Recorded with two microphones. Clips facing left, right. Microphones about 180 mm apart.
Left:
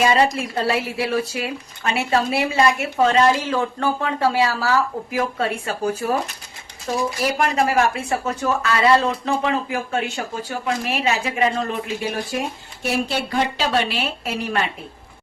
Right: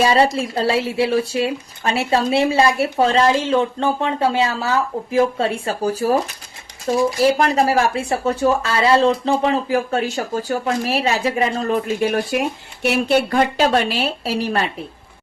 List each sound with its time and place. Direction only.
0.0 s speech: 30° right (ahead or behind)
12.0 s speech: 60° right (ahead or behind); by 14.7 s 35° right (ahead or behind)